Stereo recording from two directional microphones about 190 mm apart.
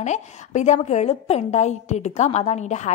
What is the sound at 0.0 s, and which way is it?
A woman's voice, 40° left (ahead or behind).